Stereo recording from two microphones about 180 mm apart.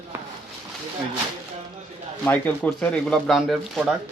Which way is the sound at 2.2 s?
10° left (ahead or behind).